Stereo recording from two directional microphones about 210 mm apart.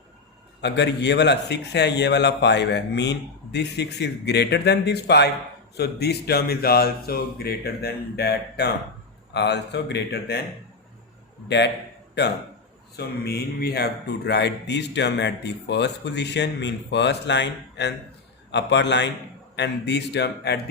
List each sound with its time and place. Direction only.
0.6 s a man's voice: 55° left (ahead or behind)
11.4 s speech: 55° left (ahead or behind)
13.0 s a man's voice: 50° left (ahead or behind)